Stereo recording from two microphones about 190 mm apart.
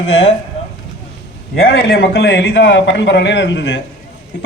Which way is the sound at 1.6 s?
60° left (ahead or behind).